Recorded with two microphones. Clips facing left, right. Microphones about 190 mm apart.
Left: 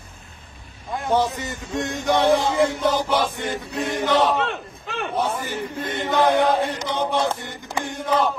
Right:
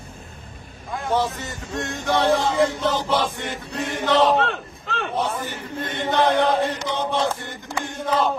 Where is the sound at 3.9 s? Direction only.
15° left (ahead or behind).